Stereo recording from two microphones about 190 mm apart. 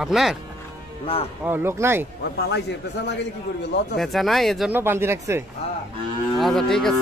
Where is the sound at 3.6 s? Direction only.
65° left (ahead or behind).